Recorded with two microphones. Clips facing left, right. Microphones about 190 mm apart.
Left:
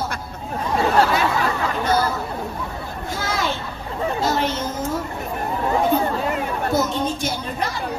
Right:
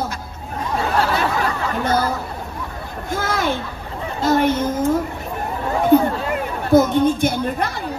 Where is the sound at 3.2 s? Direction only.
55° right (ahead or behind).